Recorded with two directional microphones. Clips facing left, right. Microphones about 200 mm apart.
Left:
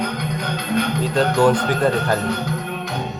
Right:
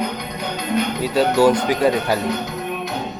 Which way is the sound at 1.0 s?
5° right (ahead or behind).